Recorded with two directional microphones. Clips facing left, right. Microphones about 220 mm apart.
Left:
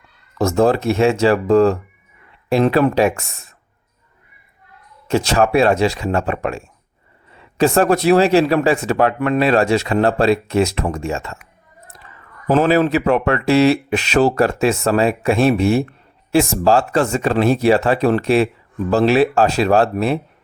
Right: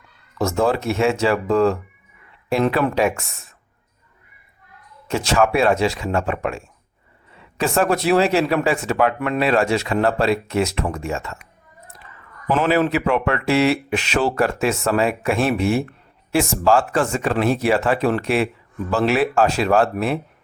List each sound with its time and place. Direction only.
0.3 s speech: 40° left (ahead or behind)
5.0 s speech: 35° left (ahead or behind)
7.6 s speech: 40° left (ahead or behind)
12.5 s speech: 40° left (ahead or behind)